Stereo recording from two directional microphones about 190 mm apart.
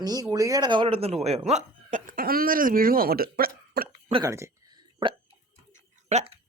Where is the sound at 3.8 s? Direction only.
55° right (ahead or behind).